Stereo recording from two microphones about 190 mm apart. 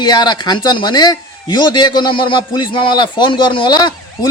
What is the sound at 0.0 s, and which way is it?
A man's voice, 20° left (ahead or behind).